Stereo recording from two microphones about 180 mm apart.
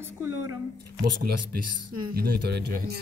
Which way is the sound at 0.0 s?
15° right (ahead or behind).